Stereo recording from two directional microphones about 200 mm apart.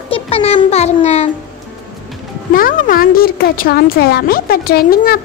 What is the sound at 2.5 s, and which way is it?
A woman's voice, 45° left (ahead or behind).